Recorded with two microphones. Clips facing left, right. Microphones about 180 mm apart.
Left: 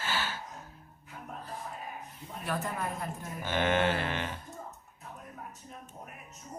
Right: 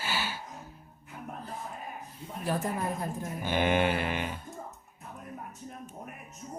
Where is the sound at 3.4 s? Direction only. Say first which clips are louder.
Right 1 dB; 15° right (ahead or behind).